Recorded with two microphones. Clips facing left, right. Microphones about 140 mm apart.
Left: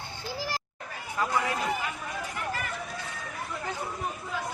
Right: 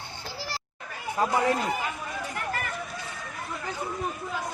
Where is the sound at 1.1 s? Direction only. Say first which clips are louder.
Right 4 dB; 35° right (ahead or behind).